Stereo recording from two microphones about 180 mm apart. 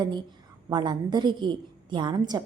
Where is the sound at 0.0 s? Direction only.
25° right (ahead or behind).